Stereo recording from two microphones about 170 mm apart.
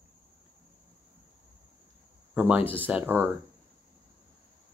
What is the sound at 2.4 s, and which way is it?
Speech, 10° right (ahead or behind).